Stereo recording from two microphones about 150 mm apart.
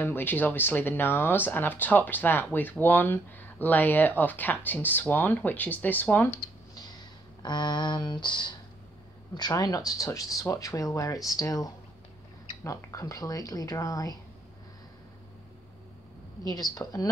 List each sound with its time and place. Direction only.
0.0 s speech: 15° left (ahead or behind)
7.4 s speech: 30° left (ahead or behind)
16.7 s speech: 25° left (ahead or behind)